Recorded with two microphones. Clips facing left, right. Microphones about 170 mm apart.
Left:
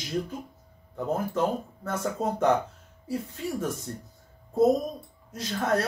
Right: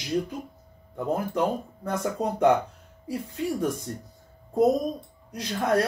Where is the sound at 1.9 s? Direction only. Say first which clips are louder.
Right 1 dB; 15° right (ahead or behind).